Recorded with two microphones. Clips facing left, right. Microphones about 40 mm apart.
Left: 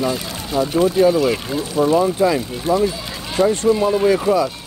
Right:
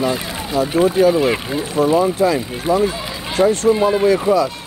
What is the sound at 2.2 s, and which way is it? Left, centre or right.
Speech, centre.